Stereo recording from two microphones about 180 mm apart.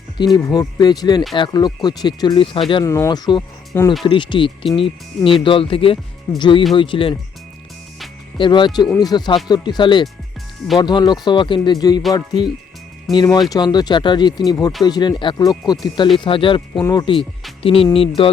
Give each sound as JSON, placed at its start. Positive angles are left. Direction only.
{"t": 0.3, "sound": "speech", "side_deg": 20}
{"t": 2.8, "sound": "speech", "side_deg": 15}
{"t": 8.4, "sound": "speech", "side_deg": 25}